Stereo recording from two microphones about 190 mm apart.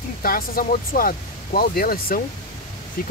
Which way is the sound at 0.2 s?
50° left (ahead or behind).